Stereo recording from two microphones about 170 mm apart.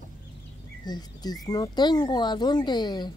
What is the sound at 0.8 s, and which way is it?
Speech, 25° left (ahead or behind).